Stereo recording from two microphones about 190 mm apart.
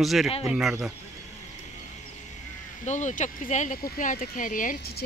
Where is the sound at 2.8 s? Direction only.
40° left (ahead or behind).